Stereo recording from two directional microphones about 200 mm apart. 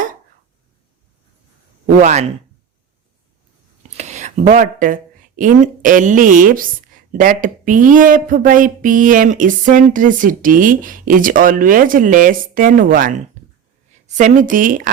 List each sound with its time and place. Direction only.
2.0 s a woman's voice: 35° right (ahead or behind)
3.9 s a woman's voice: 35° right (ahead or behind)